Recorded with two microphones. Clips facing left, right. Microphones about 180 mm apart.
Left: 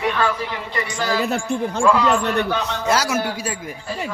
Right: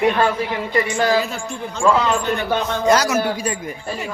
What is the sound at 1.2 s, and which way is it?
Speech, 60° left (ahead or behind).